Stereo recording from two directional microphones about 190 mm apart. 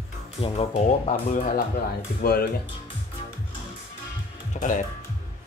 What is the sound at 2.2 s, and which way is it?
Speech, 50° left (ahead or behind).